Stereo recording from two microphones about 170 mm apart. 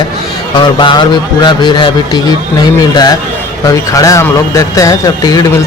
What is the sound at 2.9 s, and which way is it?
A man's voice, 25° left (ahead or behind).